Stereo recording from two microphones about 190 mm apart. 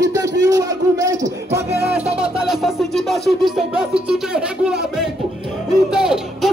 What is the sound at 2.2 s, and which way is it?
Music, 5° right (ahead or behind).